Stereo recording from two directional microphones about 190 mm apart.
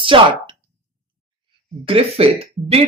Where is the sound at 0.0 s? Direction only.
25° right (ahead or behind).